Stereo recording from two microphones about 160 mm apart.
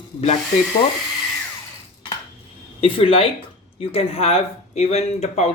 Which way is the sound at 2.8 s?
35° left (ahead or behind).